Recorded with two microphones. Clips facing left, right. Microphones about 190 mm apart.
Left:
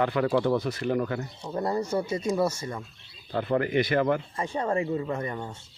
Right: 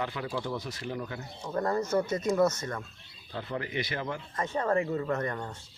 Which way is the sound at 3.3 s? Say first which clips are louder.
Left 10 dB; 60° left (ahead or behind).